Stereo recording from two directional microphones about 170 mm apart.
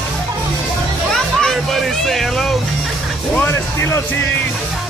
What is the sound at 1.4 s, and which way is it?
Speech, centre (ahead or behind).